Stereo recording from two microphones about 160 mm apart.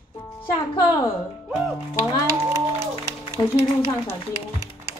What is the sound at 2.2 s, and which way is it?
Speech, 20° right (ahead or behind).